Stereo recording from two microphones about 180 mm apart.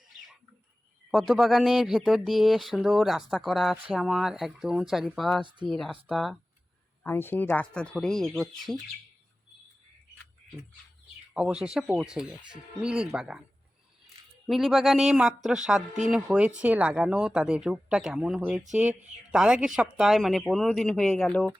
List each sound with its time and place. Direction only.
1.1 s speech: centre (ahead or behind)
5.4 s speech: 25° right (ahead or behind)
5.6 s speech: centre (ahead or behind)
7.0 s speech: 10° left (ahead or behind)
11.3 s speech: 5° right (ahead or behind)
14.4 s speech: centre (ahead or behind)